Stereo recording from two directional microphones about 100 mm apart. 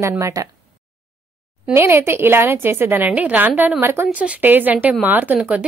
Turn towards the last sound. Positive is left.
turn(degrees=-15)  # may be behind; listen again after turning